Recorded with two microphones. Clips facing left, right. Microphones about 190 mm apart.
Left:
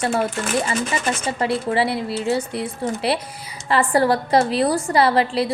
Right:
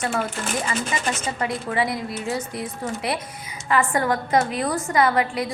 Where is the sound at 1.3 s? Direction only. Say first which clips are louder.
Left 6 dB; 30° left (ahead or behind).